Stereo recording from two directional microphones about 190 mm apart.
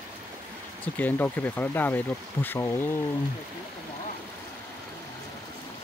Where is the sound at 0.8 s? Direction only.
10° left (ahead or behind).